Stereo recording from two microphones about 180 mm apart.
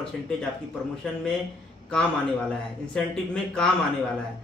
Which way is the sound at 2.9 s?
5° left (ahead or behind).